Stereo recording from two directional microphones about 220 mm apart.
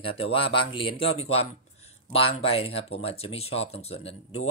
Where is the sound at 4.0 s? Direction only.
65° left (ahead or behind).